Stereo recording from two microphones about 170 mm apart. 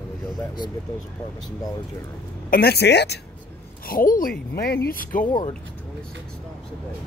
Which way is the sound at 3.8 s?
55° left (ahead or behind).